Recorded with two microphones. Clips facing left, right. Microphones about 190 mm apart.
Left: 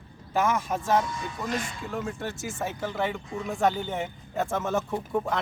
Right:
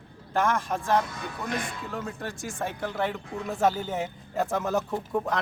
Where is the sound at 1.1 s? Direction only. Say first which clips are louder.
Left 1 dB; 60° right (ahead or behind).